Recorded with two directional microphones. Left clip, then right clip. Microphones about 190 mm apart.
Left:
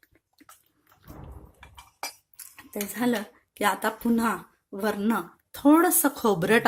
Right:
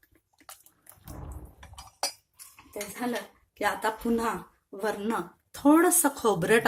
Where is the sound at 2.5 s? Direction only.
40° left (ahead or behind).